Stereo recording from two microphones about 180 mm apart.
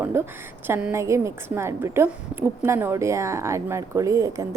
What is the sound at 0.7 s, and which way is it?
A woman's voice, 10° right (ahead or behind).